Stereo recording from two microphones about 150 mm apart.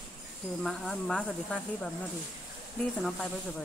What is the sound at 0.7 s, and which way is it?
Speech, 5° left (ahead or behind).